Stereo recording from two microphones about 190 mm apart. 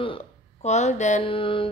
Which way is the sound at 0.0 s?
30° left (ahead or behind).